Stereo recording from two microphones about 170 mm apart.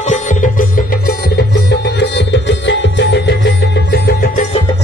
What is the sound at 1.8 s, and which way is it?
Music, 90° left.